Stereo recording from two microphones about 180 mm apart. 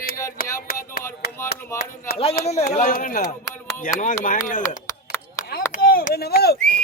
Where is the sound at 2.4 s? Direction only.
40° left (ahead or behind).